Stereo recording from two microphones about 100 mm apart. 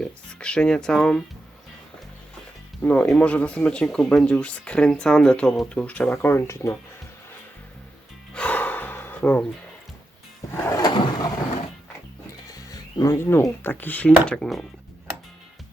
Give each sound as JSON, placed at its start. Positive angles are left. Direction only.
{"t": 0.0, "sound": "speech", "side_deg": 10}
{"t": 2.8, "sound": "speech", "side_deg": 15}
{"t": 8.3, "sound": "gasp", "side_deg": 15}
{"t": 10.7, "sound": "drawer open or close", "side_deg": 45}
{"t": 12.5, "sound": "speech", "side_deg": 35}